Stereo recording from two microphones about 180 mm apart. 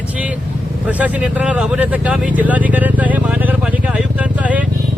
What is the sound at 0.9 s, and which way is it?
Speech, 10° right (ahead or behind).